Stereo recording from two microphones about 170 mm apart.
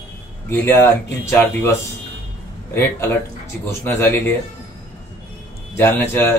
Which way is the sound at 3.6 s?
10° left (ahead or behind).